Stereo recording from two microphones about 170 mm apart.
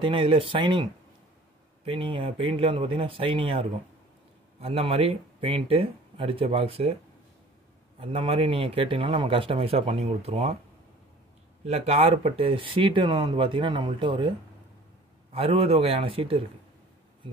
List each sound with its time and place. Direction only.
0.0 s speech: 30° right (ahead or behind)
1.9 s speech: 30° right (ahead or behind)
8.0 s speech: 35° right (ahead or behind)
11.6 s speech: 35° right (ahead or behind)
15.3 s speech: 35° right (ahead or behind)